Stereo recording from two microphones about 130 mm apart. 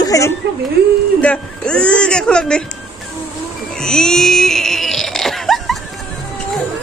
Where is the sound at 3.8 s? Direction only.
5° left (ahead or behind).